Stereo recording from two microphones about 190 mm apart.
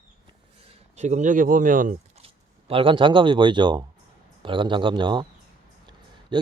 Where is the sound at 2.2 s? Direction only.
30° right (ahead or behind).